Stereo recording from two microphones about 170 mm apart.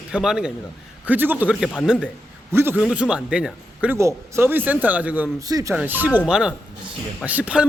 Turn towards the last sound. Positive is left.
turn(degrees=-10)  # may be behind; listen again after turning